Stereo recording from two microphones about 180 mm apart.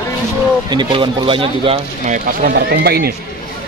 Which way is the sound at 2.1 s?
55° right (ahead or behind).